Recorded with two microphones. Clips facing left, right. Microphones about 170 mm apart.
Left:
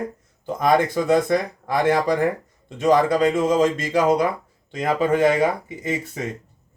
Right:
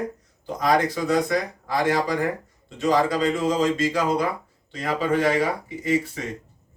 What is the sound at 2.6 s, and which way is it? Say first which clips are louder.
Speech: left 4 dB; 50° left (ahead or behind).